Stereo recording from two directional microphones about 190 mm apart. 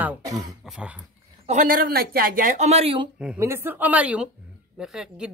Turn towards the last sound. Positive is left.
turn(degrees=-5)  # may be behind; listen again after turning